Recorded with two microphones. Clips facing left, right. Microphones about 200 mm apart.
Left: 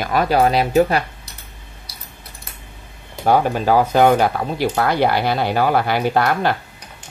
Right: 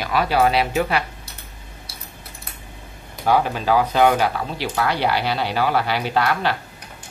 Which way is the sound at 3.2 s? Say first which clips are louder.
Left 3 dB; 45° left (ahead or behind).